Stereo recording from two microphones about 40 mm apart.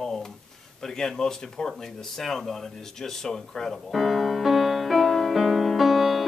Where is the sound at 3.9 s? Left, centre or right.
Centre.